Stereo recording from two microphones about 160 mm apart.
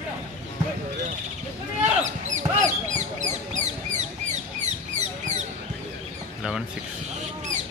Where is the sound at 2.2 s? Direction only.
50° right (ahead or behind).